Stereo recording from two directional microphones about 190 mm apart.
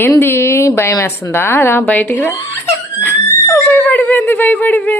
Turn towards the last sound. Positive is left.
turn(degrees=10)  # may be behind; listen again after turning